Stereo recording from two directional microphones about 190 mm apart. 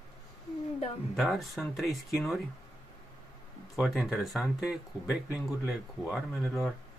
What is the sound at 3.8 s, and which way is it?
Speech, centre (ahead or behind).